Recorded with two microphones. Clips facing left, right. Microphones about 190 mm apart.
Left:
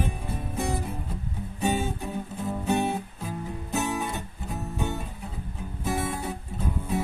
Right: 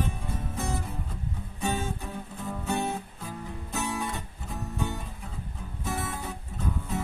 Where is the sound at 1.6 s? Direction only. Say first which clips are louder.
Left 4 dB; 15° left (ahead or behind).